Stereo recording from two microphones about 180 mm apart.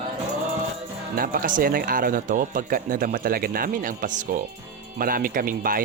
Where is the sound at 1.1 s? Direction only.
50° right (ahead or behind).